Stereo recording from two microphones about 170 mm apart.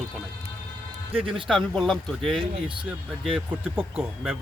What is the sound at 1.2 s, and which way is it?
Speech, 30° right (ahead or behind).